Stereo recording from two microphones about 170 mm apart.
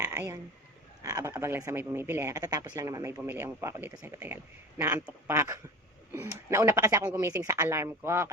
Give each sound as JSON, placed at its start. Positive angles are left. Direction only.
{"t": 0.0, "sound": "frog", "side_deg": -15}
{"t": 1.1, "sound": "speech", "side_deg": -15}